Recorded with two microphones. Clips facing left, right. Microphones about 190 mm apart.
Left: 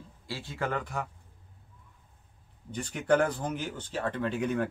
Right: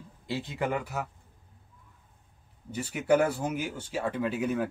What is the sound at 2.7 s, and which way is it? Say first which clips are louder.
Speech: right 1 dB; 5° right (ahead or behind).